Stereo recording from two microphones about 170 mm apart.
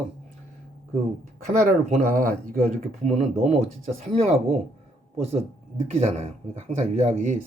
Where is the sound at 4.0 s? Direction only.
35° right (ahead or behind).